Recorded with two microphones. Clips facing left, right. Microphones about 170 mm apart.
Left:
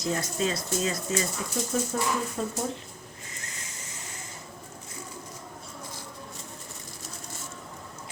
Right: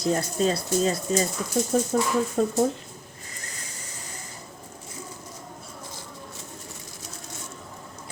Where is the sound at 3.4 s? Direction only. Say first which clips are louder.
Right 4 dB; 35° right (ahead or behind).